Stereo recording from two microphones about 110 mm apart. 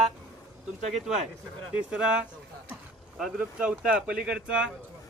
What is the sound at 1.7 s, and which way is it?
Speech, 5° right (ahead or behind).